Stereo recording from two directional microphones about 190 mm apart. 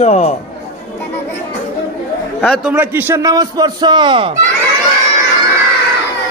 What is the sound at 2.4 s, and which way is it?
A man's voice, centre (ahead or behind).